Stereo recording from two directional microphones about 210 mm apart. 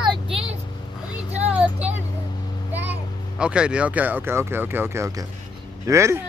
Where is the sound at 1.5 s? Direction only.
5° right (ahead or behind).